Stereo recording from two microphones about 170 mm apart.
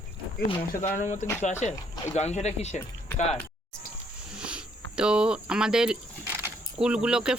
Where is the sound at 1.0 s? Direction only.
45° left (ahead or behind).